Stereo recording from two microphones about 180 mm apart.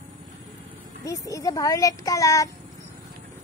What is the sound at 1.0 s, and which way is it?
Speech, 20° left (ahead or behind).